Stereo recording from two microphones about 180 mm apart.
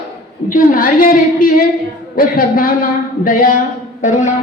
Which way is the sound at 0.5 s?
50° left (ahead or behind).